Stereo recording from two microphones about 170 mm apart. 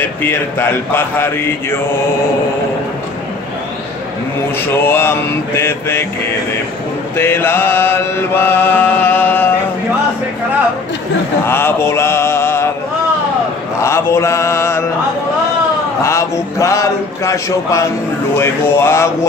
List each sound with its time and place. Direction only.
0.0 s mantra: 10° left (ahead or behind)
4.6 s mantra: 15° left (ahead or behind)
7.2 s mantra: 15° left (ahead or behind)
11.4 s mantra: 15° left (ahead or behind)
13.8 s mantra: 15° left (ahead or behind)
16.0 s mantra: 15° left (ahead or behind)